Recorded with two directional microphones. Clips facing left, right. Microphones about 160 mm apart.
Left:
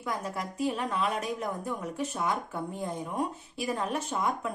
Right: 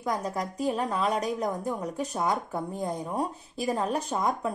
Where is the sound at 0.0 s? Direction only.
40° right (ahead or behind).